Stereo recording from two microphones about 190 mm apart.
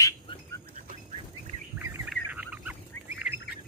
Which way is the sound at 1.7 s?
10° right (ahead or behind).